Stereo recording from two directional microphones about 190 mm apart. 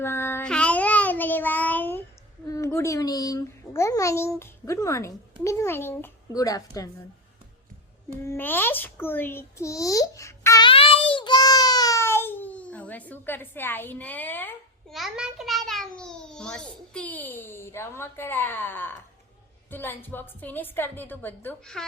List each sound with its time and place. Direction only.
0.0 s child singing: 10° left (ahead or behind)
2.5 s a child's voice: 15° left (ahead or behind)
8.2 s a child's voice: 10° left (ahead or behind)
10.7 s child singing: 30° left (ahead or behind); by 14.9 s 10° left (ahead or behind)
14.9 s a child's voice: centre (ahead or behind)